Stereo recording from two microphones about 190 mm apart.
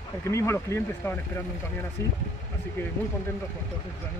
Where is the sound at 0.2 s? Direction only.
15° left (ahead or behind).